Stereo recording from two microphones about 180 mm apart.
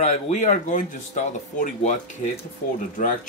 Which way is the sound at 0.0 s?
40° left (ahead or behind).